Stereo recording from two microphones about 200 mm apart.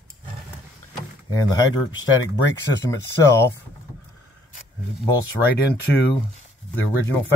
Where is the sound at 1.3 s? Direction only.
20° left (ahead or behind).